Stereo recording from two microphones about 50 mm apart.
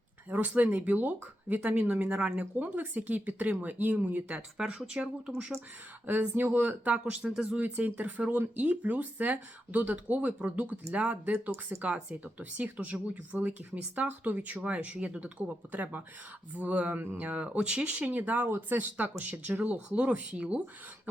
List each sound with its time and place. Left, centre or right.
0.3 s speech: right
4.5 s speech: centre
6.1 s speech: right
7.2 s speech: right
18.2 s speech: right
20.0 s speech: right